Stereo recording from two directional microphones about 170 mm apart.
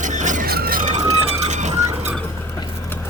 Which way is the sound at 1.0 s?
35° right (ahead or behind).